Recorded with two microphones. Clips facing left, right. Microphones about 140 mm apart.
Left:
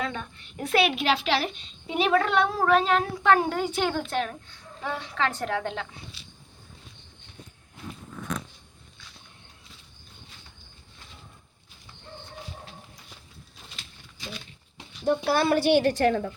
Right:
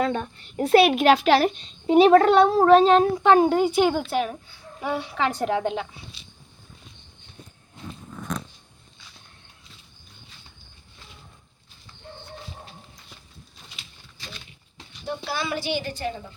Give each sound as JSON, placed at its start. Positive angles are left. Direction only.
{"t": 0.0, "sound": "a woman's voice", "side_deg": -35}
{"t": 15.0, "sound": "a woman's voice", "side_deg": 55}